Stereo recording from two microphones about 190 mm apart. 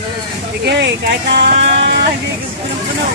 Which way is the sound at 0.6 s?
60° right (ahead or behind).